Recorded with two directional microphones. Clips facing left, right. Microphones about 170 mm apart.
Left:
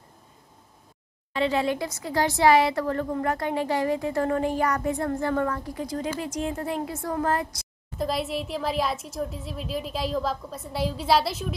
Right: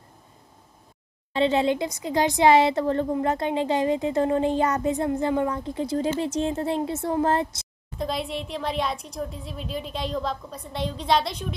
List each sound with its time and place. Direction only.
1.3 s speech: 25° right (ahead or behind)
8.0 s a woman's voice: centre (ahead or behind)